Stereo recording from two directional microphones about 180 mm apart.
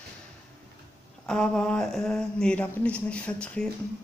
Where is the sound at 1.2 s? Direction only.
5° left (ahead or behind).